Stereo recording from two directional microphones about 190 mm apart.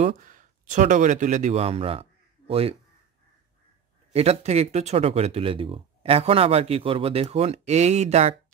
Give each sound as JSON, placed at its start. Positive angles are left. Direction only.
{"t": 0.0, "sound": "speech", "side_deg": -45}
{"t": 4.1, "sound": "speech", "side_deg": -35}